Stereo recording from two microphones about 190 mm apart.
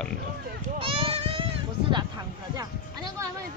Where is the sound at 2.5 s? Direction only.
20° right (ahead or behind).